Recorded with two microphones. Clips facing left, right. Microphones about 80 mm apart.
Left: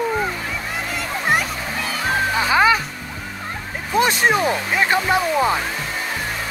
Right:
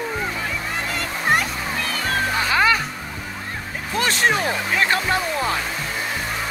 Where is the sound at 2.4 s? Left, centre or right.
Centre.